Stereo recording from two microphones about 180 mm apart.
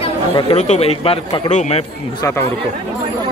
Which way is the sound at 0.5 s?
40° left (ahead or behind).